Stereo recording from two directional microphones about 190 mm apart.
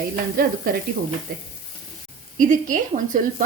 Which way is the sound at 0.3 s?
50° right (ahead or behind).